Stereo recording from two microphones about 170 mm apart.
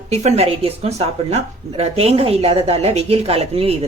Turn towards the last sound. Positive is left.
turn(degrees=-35)  # may be behind; listen again after turning